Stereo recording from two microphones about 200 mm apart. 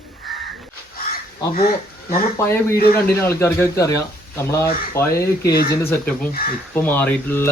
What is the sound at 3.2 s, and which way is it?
Speech, 10° left (ahead or behind).